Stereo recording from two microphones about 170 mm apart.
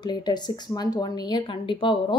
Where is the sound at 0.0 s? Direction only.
25° left (ahead or behind).